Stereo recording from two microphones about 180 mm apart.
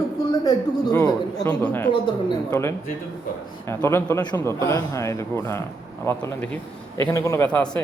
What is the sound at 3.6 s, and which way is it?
Speech, 15° left (ahead or behind).